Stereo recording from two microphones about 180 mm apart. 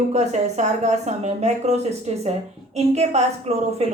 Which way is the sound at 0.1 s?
40° right (ahead or behind).